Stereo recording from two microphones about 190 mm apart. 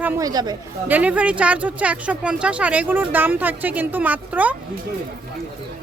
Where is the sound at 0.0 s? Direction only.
20° right (ahead or behind).